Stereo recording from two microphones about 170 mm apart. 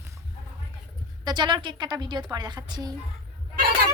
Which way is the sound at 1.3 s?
25° right (ahead or behind).